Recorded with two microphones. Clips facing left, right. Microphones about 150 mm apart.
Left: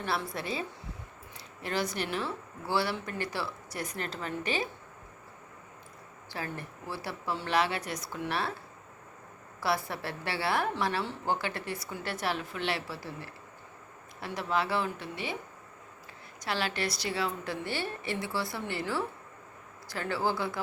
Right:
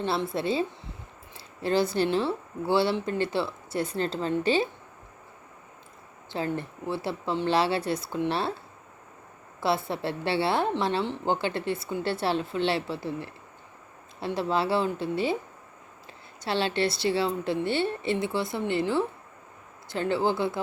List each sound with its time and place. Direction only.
0.0 s a woman's voice: 25° right (ahead or behind)
6.3 s a woman's voice: 25° right (ahead or behind)
9.6 s a woman's voice: 25° right (ahead or behind)
16.4 s a woman's voice: 30° right (ahead or behind)